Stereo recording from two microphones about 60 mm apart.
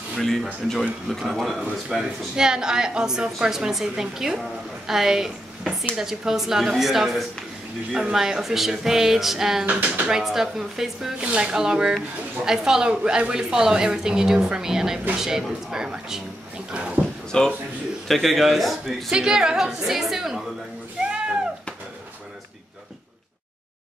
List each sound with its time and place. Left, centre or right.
0.2 s speech: centre
9.7 s speech: right
10.0 s speech: centre
16.7 s a sound: centre
17.3 s a man's voice: centre
18.0 s speech: centre
19.0 s speech: centre